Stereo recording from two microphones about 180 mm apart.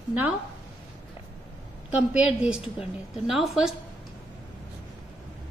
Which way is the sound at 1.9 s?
5° right (ahead or behind).